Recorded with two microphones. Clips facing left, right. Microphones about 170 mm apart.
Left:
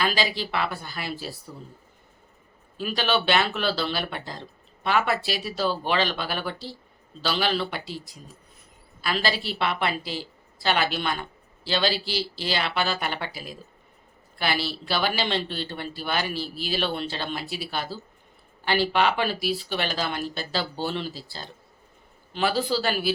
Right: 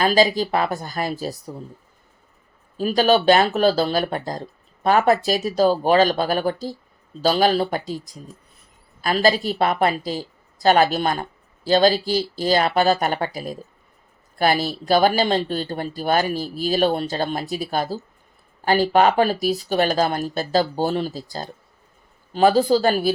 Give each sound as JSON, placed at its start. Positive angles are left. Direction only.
{"t": 0.0, "sound": "a woman's voice", "side_deg": -45}
{"t": 2.7, "sound": "a woman's voice", "side_deg": -40}